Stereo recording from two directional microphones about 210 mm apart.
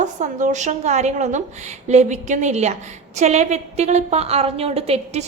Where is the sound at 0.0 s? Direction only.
35° right (ahead or behind).